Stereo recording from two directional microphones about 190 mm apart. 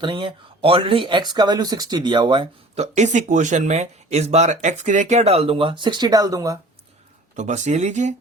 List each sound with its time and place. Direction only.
0.0 s speech: 25° right (ahead or behind)
7.3 s speech: 40° right (ahead or behind)